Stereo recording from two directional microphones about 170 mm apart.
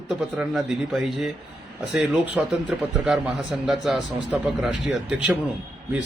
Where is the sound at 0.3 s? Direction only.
5° right (ahead or behind).